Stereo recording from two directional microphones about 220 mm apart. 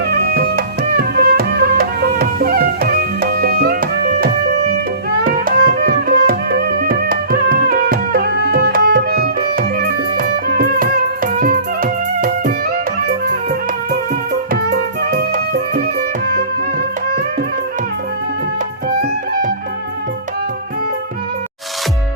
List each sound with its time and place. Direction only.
0.3 s music: 45° right (ahead or behind)
14.5 s music: 45° right (ahead or behind)
18.9 s music: 40° right (ahead or behind)